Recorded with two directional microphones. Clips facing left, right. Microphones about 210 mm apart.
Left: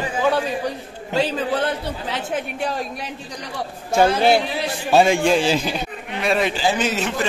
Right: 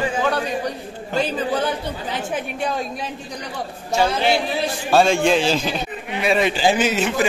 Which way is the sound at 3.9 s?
50° left (ahead or behind).